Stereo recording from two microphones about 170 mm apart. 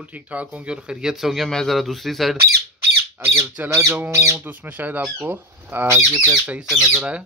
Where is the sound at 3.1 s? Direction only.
15° right (ahead or behind).